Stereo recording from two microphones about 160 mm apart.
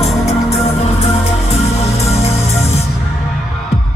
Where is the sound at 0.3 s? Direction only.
40° left (ahead or behind).